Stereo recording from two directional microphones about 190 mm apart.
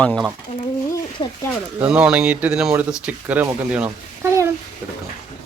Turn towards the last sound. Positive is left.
turn(degrees=-10)  # may be behind; listen again after turning